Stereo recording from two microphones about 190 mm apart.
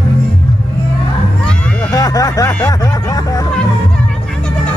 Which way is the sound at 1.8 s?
20° left (ahead or behind).